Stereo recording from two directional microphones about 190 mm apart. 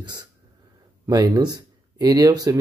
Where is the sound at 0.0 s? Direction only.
25° right (ahead or behind).